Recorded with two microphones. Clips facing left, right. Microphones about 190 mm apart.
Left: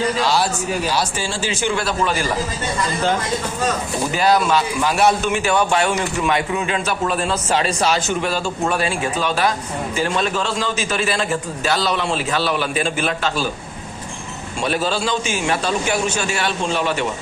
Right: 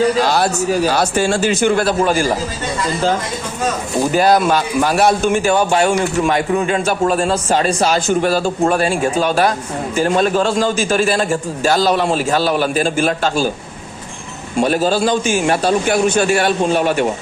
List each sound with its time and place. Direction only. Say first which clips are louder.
0.2 s a man's voice: right 4 dB; 50° right (ahead or behind)
0.9 s a man's voice: right 7 dB; 60° right (ahead or behind)
1.9 s a man's voice: right 6 dB; 40° right (ahead or behind)
4.1 s a man's voice: right 3 dB; 45° right (ahead or behind)
8.0 s a man's voice: right 6 dB; 40° right (ahead or behind)
14.6 s a man's voice: right 6 dB; 45° right (ahead or behind)